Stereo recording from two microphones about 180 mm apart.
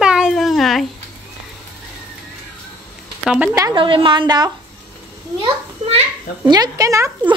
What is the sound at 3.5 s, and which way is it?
A woman's voice, 20° right (ahead or behind).